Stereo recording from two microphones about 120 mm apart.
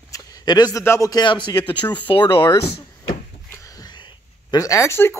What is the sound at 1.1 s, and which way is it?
A man's voice, 40° left (ahead or behind).